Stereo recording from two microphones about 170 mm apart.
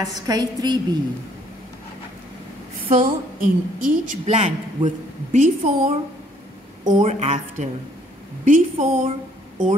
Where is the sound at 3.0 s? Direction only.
50° right (ahead or behind).